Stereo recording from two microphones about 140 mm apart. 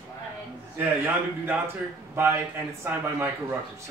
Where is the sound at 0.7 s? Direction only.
15° right (ahead or behind).